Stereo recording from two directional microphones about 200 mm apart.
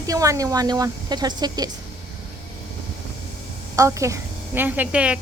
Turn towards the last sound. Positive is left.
turn(degrees=-5)  # may be behind; listen again after turning